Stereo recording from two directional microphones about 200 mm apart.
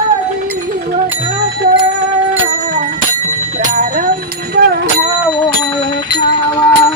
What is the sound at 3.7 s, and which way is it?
Bicycle bell, 40° right (ahead or behind).